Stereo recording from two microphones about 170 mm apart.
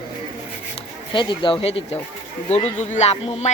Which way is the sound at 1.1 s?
30° left (ahead or behind).